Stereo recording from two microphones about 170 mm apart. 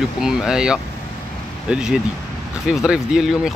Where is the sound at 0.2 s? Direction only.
5° right (ahead or behind).